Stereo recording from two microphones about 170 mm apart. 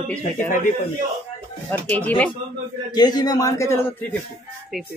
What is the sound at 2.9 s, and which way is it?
Speech, 25° left (ahead or behind).